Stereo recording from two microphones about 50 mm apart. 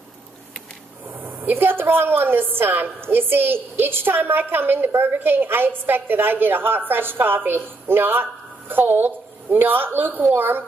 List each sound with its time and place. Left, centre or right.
1.2 s a woman's voice: right